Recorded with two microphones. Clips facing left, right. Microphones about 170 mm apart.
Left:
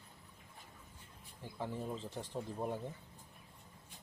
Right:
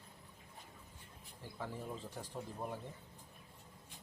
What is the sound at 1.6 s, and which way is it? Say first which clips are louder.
Speech: left 3 dB; 25° left (ahead or behind).